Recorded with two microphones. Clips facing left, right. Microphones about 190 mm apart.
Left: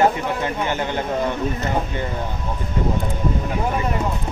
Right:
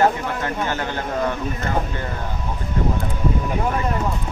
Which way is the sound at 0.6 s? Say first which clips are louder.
Left 2 dB; 15° left (ahead or behind).